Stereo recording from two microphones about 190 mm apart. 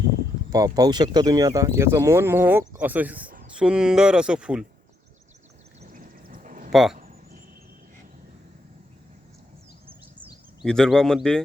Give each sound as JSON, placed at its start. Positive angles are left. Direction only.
{"t": 0.5, "sound": "speech", "side_deg": -20}
{"t": 5.8, "sound": "a sound", "side_deg": -45}
{"t": 6.7, "sound": "speech", "side_deg": 0}
{"t": 10.2, "sound": "speech", "side_deg": 0}